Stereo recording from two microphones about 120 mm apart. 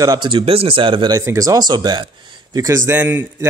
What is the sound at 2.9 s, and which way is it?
Speech, 20° right (ahead or behind).